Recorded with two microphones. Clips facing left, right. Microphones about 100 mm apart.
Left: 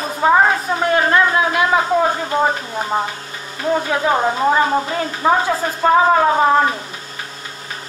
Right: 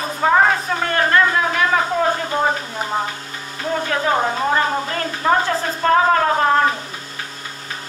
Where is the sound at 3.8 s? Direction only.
10° left (ahead or behind).